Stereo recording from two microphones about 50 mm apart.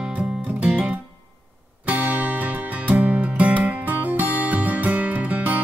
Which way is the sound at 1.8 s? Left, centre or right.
Right.